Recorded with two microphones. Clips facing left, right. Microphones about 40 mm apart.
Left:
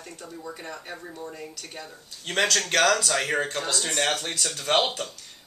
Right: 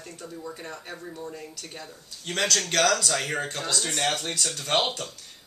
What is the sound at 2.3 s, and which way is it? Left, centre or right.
Speech, centre.